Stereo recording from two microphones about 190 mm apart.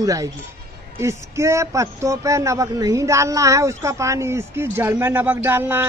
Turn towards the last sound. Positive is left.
turn(degrees=-10)  # may be behind; listen again after turning